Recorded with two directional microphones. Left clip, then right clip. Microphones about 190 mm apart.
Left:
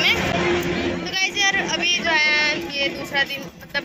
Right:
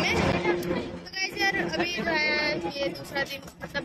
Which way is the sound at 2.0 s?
5° right (ahead or behind).